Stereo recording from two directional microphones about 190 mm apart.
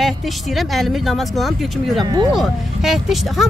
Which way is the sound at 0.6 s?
Centre (ahead or behind).